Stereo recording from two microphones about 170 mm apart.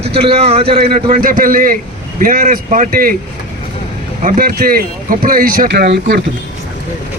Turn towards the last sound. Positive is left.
turn(degrees=-70)  # may be behind; listen again after turning